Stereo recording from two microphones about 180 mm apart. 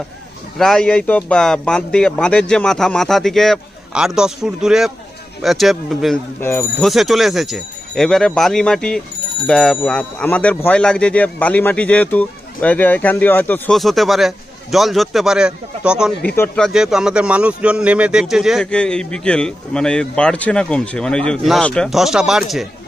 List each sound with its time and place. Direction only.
0.6 s speech: 5° left (ahead or behind)